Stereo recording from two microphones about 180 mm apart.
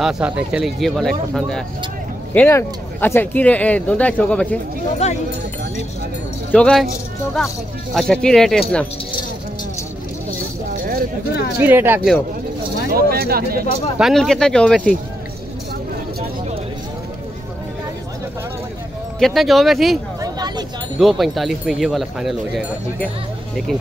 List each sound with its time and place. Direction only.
0.0 s speech: 5° right (ahead or behind)
5.0 s speech: 35° left (ahead or behind)
6.5 s speech: 5° left (ahead or behind)
7.9 s speech: 5° left (ahead or behind)
10.8 s a sound: 55° right (ahead or behind)
11.6 s speech: 10° right (ahead or behind)
12.9 s speech: 55° right (ahead or behind)
13.9 s speech: centre (ahead or behind)
19.1 s speech: centre (ahead or behind)
20.2 s a sound: 20° right (ahead or behind)
21.0 s speech: centre (ahead or behind)